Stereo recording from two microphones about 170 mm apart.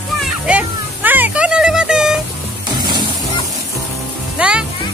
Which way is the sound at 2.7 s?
25° right (ahead or behind).